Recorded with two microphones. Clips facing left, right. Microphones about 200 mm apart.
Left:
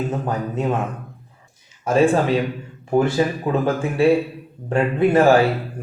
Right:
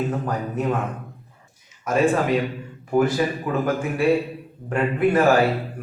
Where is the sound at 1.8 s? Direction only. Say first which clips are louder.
Left 3 dB; 30° left (ahead or behind).